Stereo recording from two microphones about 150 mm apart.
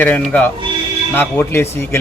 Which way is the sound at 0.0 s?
10° left (ahead or behind).